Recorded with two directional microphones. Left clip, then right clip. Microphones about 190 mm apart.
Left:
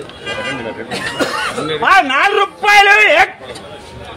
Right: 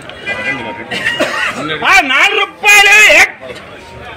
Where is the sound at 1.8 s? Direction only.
5° right (ahead or behind).